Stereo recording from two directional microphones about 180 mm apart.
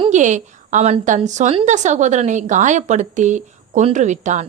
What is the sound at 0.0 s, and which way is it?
A woman's voice, 40° right (ahead or behind).